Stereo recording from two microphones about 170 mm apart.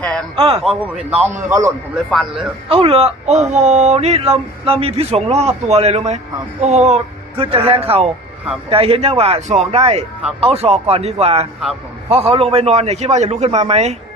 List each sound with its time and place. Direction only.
0.3 s speech: 35° right (ahead or behind)
0.6 s a man's voice: 5° right (ahead or behind)
2.0 s a man's voice: centre (ahead or behind)
2.6 s speech: 35° right (ahead or behind)